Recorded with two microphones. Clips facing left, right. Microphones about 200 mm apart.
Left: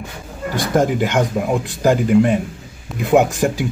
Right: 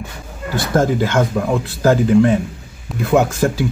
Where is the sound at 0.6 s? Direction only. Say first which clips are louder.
Right 1 dB; 15° left (ahead or behind).